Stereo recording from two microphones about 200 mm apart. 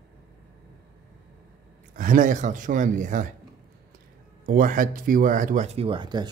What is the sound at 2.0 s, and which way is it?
Speech, 40° right (ahead or behind).